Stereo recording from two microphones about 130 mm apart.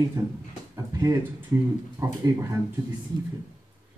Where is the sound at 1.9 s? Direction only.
25° right (ahead or behind).